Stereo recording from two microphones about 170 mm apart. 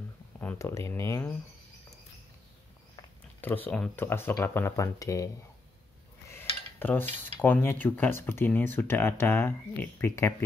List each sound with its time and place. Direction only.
0.4 s speech: 15° left (ahead or behind)
3.3 s cutlery: 10° left (ahead or behind)
6.3 s cutlery: 10° left (ahead or behind)